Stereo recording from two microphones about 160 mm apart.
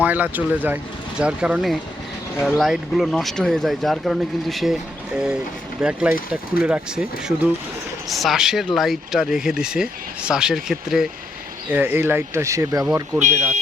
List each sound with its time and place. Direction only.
0.0 s speech: 10° right (ahead or behind)
11.7 s speech: 15° right (ahead or behind)